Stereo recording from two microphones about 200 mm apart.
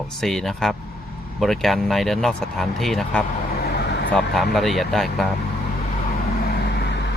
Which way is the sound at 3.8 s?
55° left (ahead or behind).